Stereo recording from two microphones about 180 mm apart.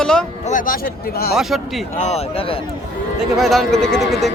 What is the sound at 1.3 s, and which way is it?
Speech, centre (ahead or behind).